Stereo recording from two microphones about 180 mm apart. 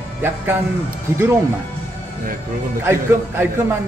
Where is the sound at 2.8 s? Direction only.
15° right (ahead or behind).